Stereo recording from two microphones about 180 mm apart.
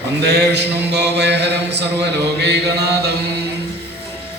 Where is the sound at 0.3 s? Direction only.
70° right (ahead or behind).